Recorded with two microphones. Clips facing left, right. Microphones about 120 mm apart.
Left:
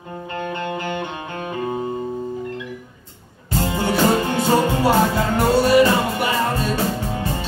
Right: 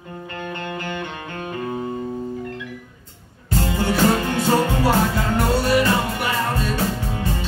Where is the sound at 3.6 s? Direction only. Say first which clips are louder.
Left 1 dB; 25° left (ahead or behind).